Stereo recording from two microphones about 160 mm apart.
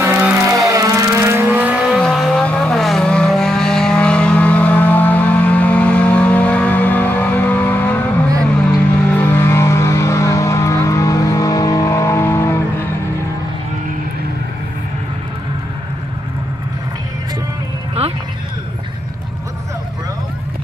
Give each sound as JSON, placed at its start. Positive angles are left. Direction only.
{"t": 0.0, "sound": "a sound", "side_deg": -15}
{"t": 0.6, "sound": "vehicle", "side_deg": -20}
{"t": 2.0, "sound": "vehicle", "side_deg": 5}
{"t": 9.0, "sound": "vehicle", "side_deg": 10}